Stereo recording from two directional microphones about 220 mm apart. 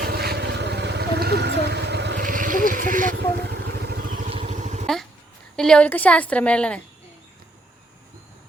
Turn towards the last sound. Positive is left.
turn(degrees=5)  # may be behind; listen again after turning